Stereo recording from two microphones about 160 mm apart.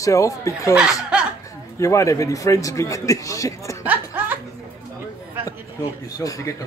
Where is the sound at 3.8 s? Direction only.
10° right (ahead or behind).